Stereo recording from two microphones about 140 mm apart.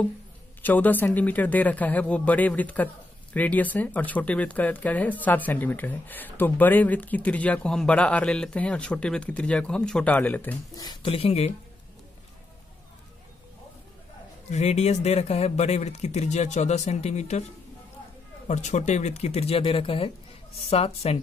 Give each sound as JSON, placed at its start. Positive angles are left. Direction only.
{"t": 0.6, "sound": "speech", "side_deg": 15}
{"t": 10.8, "sound": "speech", "side_deg": 30}
{"t": 11.1, "sound": "speech", "side_deg": 45}
{"t": 14.5, "sound": "speech", "side_deg": 50}
{"t": 18.5, "sound": "speech", "side_deg": 60}